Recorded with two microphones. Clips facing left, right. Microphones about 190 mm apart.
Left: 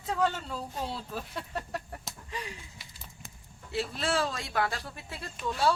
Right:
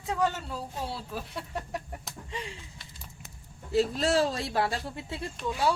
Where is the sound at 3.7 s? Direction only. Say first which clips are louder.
Right 6 dB; 40° right (ahead or behind); by 5.7 s 15° right (ahead or behind).